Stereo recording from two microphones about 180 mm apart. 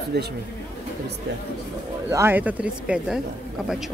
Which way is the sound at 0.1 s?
65° right (ahead or behind).